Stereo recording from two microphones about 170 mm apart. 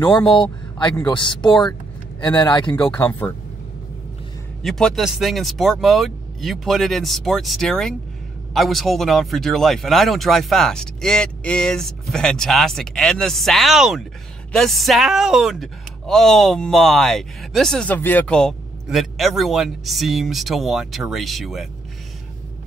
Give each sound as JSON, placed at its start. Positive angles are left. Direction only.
{"t": 0.3, "sound": "speech", "side_deg": 30}
{"t": 4.6, "sound": "speech", "side_deg": 0}